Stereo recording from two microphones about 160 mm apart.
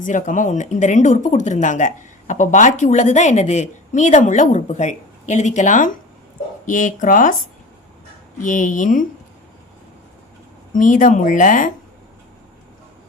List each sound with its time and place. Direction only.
0.0 s speech: 50° left (ahead or behind)
8.4 s speech: 55° left (ahead or behind)
10.7 s speech: 55° left (ahead or behind)